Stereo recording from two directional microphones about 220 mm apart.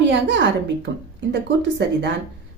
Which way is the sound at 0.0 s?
55° right (ahead or behind).